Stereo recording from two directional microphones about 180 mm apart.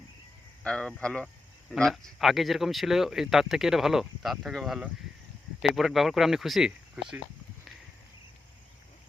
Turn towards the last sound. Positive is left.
turn(degrees=-5)  # may be behind; listen again after turning